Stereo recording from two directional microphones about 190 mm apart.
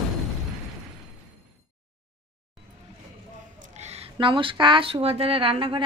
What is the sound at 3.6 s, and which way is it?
Speech, 35° right (ahead or behind).